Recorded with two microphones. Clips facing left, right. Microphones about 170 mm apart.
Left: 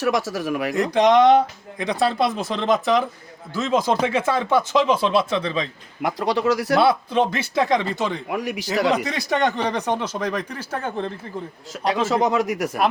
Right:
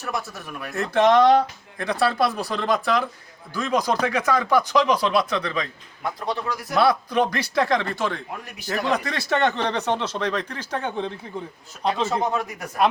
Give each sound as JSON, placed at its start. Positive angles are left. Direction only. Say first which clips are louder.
{"t": 0.0, "sound": "speech", "louder": "left 9 dB", "side_deg": 90}
{"t": 0.9, "sound": "speech", "louder": "left 1 dB", "side_deg": 15}
{"t": 6.0, "sound": "speech", "louder": "left 6 dB", "side_deg": 90}
{"t": 6.7, "sound": "speech", "louder": "right 1 dB", "side_deg": 25}
{"t": 8.3, "sound": "speech", "louder": "left 6 dB", "side_deg": 90}
{"t": 9.0, "sound": "speech", "louder": "left 1 dB", "side_deg": 15}
{"t": 11.9, "sound": "speech", "louder": "left 3 dB", "side_deg": 90}